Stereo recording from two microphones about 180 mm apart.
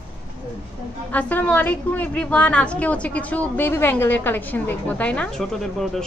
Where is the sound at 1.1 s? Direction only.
10° left (ahead or behind).